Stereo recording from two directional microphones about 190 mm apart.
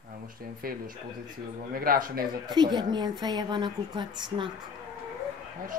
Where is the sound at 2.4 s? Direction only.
20° right (ahead or behind).